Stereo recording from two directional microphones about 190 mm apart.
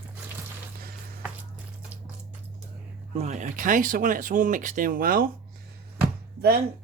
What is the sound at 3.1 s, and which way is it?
Speech, 40° right (ahead or behind).